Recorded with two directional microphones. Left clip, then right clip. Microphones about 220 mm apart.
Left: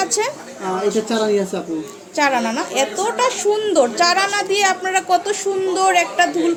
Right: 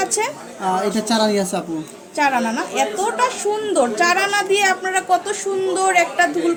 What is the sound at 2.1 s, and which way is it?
A woman's voice, 10° left (ahead or behind).